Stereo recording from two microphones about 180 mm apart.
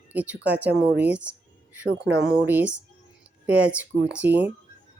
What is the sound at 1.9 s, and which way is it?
Speech, 65° right (ahead or behind).